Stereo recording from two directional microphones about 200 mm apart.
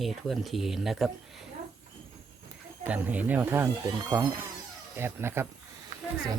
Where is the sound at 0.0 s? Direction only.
Centre (ahead or behind).